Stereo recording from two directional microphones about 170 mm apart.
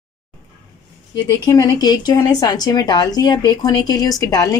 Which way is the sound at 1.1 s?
25° left (ahead or behind).